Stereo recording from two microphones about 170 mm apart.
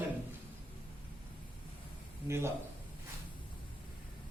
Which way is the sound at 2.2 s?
15° right (ahead or behind).